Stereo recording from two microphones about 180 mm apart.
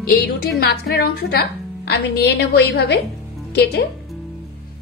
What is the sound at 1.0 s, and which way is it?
A woman's voice, 60° left (ahead or behind).